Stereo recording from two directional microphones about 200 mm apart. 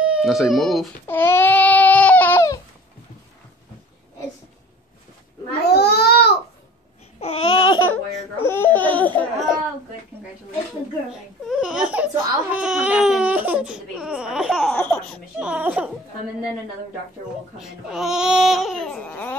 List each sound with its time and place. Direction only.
0.0 s speech: 5° right (ahead or behind)
1.0 s baby cry: 10° left (ahead or behind)
5.7 s babbling: 55° left (ahead or behind)
7.2 s babbling: 30° left (ahead or behind)
8.4 s laughter: 10° left (ahead or behind)
11.4 s baby cry: centre (ahead or behind)
14.8 s baby laughter: 10° left (ahead or behind)
15.3 s baby cry: 5° right (ahead or behind)
17.6 s baby cry: centre (ahead or behind)